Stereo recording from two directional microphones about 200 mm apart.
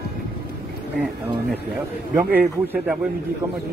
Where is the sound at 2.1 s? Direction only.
10° right (ahead or behind).